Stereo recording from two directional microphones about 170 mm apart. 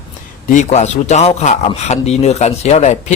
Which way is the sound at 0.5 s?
45° left (ahead or behind).